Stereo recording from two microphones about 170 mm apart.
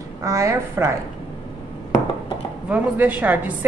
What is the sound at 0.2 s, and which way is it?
Speech, 15° right (ahead or behind).